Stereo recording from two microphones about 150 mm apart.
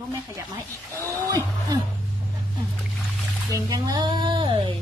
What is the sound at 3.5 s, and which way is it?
Speech, 25° right (ahead or behind).